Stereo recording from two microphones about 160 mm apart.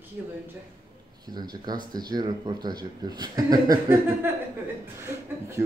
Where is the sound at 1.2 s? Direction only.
25° right (ahead or behind).